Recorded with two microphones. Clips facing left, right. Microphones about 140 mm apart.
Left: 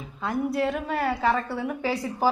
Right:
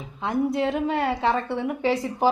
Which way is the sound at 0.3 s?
20° right (ahead or behind).